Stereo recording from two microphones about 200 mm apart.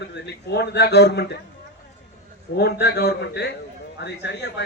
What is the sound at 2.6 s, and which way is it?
Speech, 55° left (ahead or behind).